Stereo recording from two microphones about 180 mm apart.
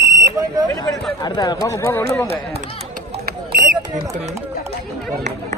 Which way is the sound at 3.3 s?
50° right (ahead or behind).